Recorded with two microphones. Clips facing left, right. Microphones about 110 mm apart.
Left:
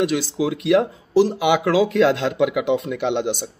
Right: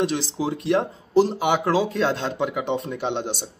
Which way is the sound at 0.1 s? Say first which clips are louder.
Left 4 dB; 35° right (ahead or behind).